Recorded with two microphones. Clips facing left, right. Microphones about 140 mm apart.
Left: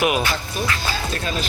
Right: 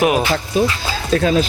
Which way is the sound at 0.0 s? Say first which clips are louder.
Right 5 dB; 35° right (ahead or behind).